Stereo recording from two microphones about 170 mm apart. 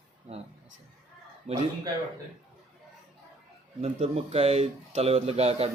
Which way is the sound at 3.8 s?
35° right (ahead or behind).